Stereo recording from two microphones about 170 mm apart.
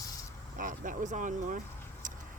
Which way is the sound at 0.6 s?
50° right (ahead or behind).